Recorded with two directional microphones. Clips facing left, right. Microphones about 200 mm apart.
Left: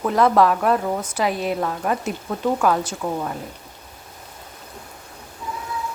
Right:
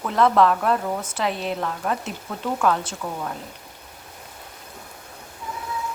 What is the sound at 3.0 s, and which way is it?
Speech, 25° left (ahead or behind).